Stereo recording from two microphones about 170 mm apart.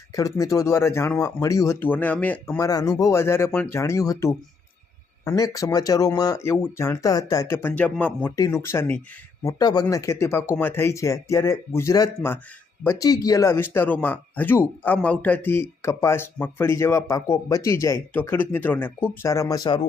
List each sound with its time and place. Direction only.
0.2 s speech: 20° left (ahead or behind)
2.6 s speech: 20° left (ahead or behind)